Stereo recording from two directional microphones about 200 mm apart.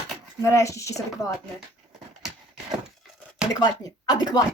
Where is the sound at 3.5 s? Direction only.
20° left (ahead or behind).